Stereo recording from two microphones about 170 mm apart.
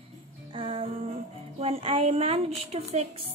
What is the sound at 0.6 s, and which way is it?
A woman's voice, 35° right (ahead or behind).